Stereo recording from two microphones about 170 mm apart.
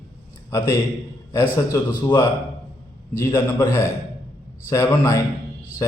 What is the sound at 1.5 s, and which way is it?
Speech, 15° left (ahead or behind).